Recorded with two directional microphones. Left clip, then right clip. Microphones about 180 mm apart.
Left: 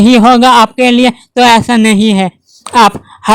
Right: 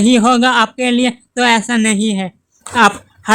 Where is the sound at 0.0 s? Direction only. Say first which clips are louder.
Left 6 dB; 35° left (ahead or behind).